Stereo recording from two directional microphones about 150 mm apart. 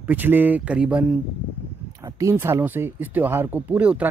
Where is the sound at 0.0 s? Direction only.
10° right (ahead or behind).